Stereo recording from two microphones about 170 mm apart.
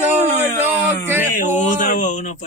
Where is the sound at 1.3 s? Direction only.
45° left (ahead or behind).